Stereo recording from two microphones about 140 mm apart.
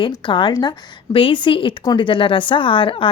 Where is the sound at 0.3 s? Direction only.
35° left (ahead or behind).